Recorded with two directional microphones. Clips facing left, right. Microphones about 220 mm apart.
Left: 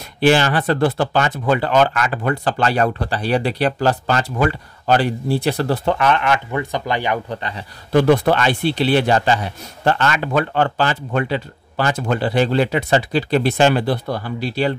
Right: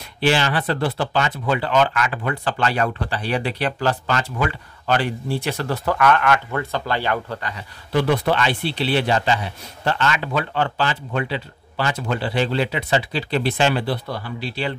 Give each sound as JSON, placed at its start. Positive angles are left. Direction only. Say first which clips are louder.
{"t": 0.2, "sound": "speech", "louder": "left 5 dB", "side_deg": 45}
{"t": 7.9, "sound": "a man's voice", "louder": "left 5 dB", "side_deg": 45}